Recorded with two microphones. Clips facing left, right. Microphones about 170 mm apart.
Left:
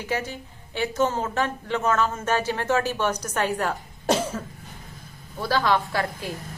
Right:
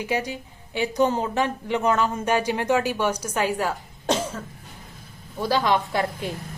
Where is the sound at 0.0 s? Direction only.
15° right (ahead or behind).